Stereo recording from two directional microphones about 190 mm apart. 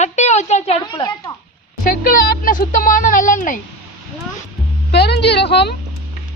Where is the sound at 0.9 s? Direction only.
20° left (ahead or behind).